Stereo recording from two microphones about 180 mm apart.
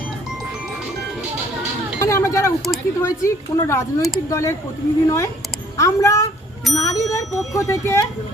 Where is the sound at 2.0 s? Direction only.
15° left (ahead or behind).